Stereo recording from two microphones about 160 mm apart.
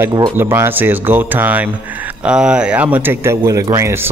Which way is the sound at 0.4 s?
15° right (ahead or behind).